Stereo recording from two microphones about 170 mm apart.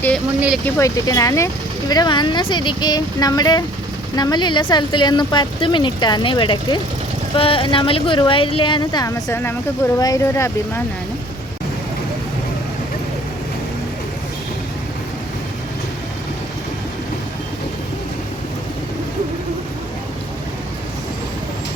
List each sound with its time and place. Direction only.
0.6 s speech: 20° left (ahead or behind)